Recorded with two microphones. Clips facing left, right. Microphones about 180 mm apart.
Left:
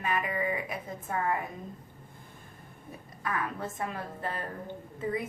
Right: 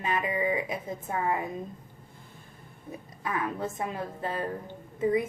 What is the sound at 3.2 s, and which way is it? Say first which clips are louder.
A woman's voice: right 3 dB; 20° right (ahead or behind).